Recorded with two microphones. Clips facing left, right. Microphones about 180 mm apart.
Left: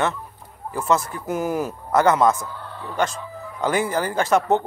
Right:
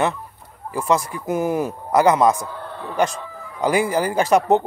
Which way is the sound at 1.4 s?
10° left (ahead or behind).